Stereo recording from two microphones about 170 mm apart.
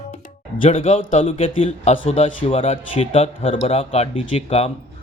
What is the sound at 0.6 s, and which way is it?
Speech, 35° left (ahead or behind).